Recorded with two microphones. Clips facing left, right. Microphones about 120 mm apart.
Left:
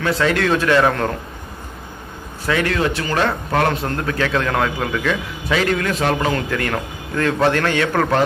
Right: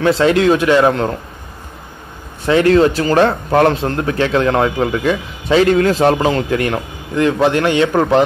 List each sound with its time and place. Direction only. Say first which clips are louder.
0.0 s a man's voice: right 6 dB; 30° right (ahead or behind)
0.5 s a man's voice: right 4 dB; 15° right (ahead or behind)
2.4 s a man's voice: right 9 dB; 30° right (ahead or behind)